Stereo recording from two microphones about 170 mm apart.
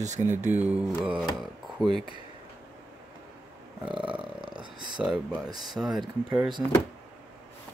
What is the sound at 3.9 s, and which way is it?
Speech, 30° right (ahead or behind).